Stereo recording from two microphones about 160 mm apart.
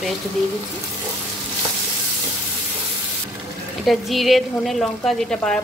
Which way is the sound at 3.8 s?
Centre (ahead or behind).